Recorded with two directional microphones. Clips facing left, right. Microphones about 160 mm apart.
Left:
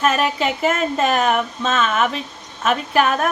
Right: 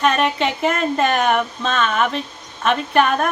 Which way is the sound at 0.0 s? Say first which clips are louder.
Right 1 dB; 5° left (ahead or behind).